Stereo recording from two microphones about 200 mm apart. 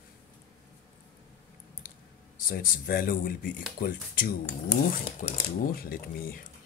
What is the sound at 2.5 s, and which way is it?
Speech, 45° left (ahead or behind).